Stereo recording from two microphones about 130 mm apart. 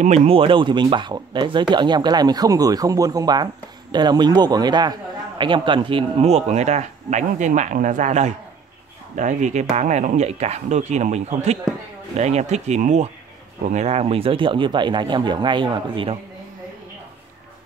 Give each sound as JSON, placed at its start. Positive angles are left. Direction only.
{"t": 0.0, "sound": "speech", "side_deg": -55}